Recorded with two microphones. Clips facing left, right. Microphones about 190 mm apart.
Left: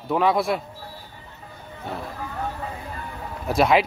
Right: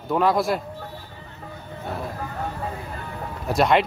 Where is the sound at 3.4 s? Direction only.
Centre (ahead or behind).